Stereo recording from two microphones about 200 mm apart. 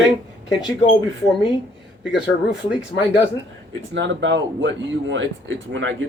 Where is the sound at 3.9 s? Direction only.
65° right (ahead or behind).